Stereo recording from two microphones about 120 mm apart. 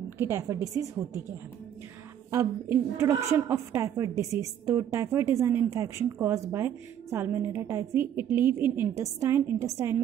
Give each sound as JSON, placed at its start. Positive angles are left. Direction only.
{"t": 0.2, "sound": "a woman's voice", "side_deg": -20}
{"t": 2.3, "sound": "a woman's voice", "side_deg": -20}